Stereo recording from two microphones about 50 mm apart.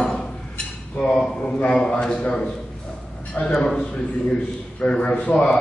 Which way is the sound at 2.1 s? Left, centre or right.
Left.